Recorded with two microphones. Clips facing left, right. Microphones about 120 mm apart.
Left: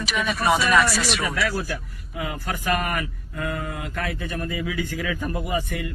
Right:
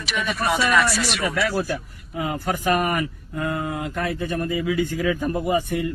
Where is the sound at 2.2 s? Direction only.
25° right (ahead or behind).